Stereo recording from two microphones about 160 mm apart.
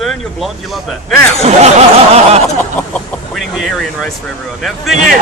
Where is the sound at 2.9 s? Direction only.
5° left (ahead or behind).